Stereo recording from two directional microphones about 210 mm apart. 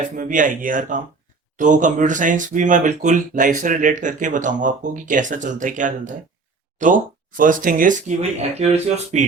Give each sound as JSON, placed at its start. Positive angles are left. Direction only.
{"t": 0.2, "sound": "speech", "side_deg": -40}